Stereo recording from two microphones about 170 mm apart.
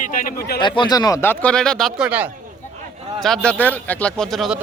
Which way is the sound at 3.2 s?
5° left (ahead or behind).